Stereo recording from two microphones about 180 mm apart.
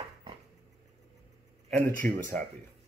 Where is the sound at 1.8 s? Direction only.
15° left (ahead or behind).